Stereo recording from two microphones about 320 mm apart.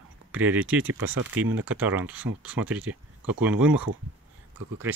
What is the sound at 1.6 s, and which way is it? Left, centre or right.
Speech, centre.